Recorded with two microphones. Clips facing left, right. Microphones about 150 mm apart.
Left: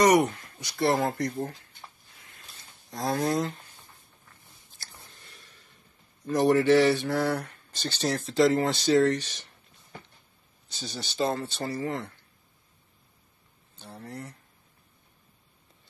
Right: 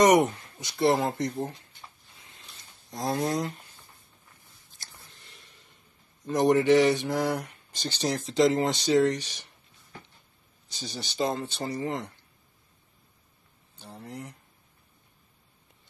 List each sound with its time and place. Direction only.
0.0 s speech: 20° right (ahead or behind)
2.2 s a sound: 20° right (ahead or behind)
5.3 s a sound: 20° right (ahead or behind)
6.2 s speech: 20° right (ahead or behind)
10.7 s speech: 15° right (ahead or behind)
13.7 s speech: 10° right (ahead or behind)